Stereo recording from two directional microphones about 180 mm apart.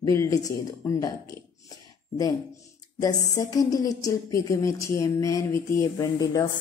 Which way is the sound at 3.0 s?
20° left (ahead or behind).